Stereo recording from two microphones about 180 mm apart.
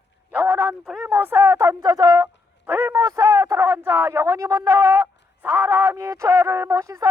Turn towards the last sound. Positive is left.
turn(degrees=-15)  # may be behind; listen again after turning